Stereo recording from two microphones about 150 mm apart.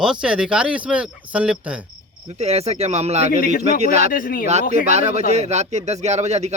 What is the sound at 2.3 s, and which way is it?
Speech, 45° right (ahead or behind).